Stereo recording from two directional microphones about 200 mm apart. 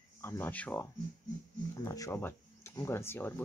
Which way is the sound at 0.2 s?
10° left (ahead or behind).